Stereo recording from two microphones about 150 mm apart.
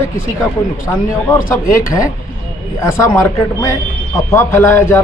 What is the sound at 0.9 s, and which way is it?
Speech, 15° left (ahead or behind).